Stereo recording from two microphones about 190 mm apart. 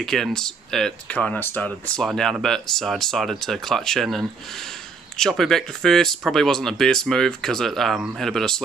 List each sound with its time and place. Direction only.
0.0 s speech: centre (ahead or behind)